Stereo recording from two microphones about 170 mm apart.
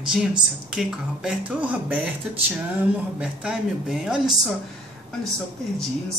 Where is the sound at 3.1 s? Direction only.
5° right (ahead or behind).